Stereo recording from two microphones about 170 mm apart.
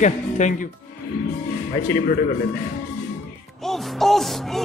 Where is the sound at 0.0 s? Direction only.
45° left (ahead or behind).